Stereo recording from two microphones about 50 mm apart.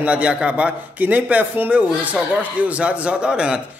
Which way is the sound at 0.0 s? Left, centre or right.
Right.